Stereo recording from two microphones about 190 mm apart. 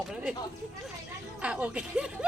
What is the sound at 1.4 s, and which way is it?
Speech, 5° right (ahead or behind).